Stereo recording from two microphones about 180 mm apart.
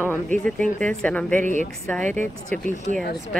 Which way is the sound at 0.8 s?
5° left (ahead or behind).